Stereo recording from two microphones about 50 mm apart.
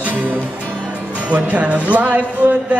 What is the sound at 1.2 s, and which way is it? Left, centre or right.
Speech, right.